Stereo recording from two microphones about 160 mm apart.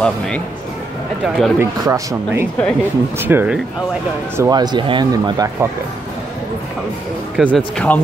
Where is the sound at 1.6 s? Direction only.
20° right (ahead or behind).